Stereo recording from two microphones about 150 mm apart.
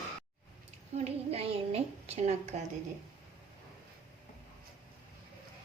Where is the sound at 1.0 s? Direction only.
45° right (ahead or behind).